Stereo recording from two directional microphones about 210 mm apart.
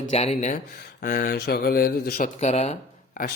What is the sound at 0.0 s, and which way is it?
A man's voice, 30° left (ahead or behind).